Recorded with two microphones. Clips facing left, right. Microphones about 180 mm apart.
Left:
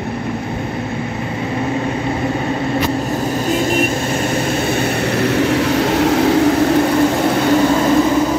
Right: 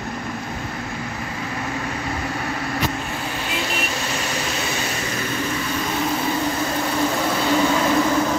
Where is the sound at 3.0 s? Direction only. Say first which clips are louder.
Left 10 dB; 40° left (ahead or behind); by 6.8 s 70° left (ahead or behind).